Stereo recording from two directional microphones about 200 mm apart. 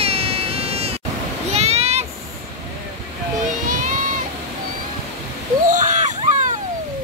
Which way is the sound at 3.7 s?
40° right (ahead or behind).